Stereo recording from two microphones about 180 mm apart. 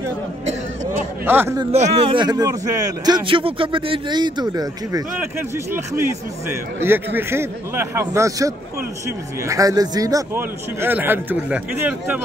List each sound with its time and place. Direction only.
1.2 s a man's voice: 10° right (ahead or behind)
1.7 s a man's voice: 35° right (ahead or behind); by 12.2 s 10° right (ahead or behind)